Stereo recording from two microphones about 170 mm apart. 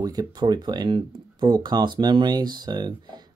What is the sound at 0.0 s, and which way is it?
Speech, 25° right (ahead or behind).